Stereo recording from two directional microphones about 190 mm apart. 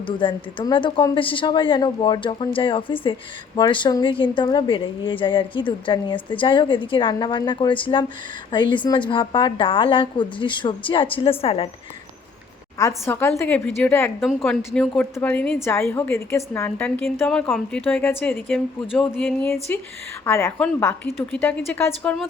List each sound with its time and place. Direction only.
0.0 s speech: 25° left (ahead or behind)
12.8 s a woman's voice: 10° left (ahead or behind)
14.2 s a woman's voice: centre (ahead or behind)